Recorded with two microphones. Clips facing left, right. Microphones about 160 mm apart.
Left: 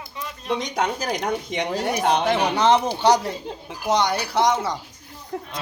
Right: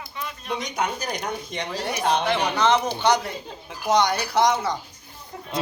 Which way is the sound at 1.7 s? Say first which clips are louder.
Left 3 dB; 50° left (ahead or behind).